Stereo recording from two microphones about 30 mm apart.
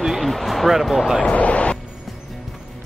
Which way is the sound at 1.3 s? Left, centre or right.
Left.